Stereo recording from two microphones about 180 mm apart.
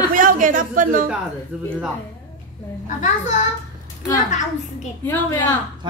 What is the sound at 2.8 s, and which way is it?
A child's voice, 45° left (ahead or behind).